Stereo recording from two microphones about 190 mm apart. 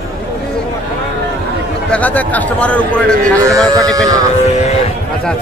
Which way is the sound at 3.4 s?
15° right (ahead or behind).